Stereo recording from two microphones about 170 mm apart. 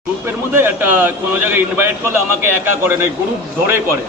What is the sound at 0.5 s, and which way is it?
A man's voice, 10° right (ahead or behind).